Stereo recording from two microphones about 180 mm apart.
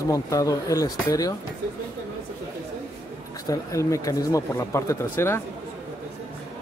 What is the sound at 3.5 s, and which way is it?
Speech, 20° left (ahead or behind).